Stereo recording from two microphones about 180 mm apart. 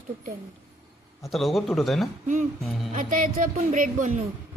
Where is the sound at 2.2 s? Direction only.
45° right (ahead or behind).